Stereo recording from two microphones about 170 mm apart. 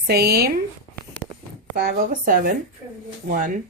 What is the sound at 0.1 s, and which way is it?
Speech, 70° right (ahead or behind).